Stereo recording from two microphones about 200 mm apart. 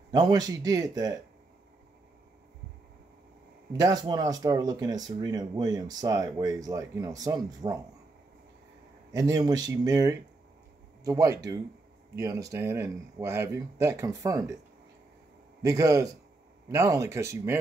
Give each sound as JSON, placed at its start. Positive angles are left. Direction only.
{"t": 0.1, "sound": "speech", "side_deg": -20}
{"t": 3.7, "sound": "speech", "side_deg": -20}
{"t": 9.1, "sound": "speech", "side_deg": -20}
{"t": 15.6, "sound": "speech", "side_deg": -15}